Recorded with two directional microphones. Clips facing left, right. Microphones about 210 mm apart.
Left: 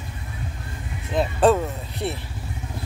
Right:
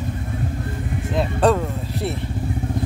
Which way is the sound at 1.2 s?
Centre (ahead or behind).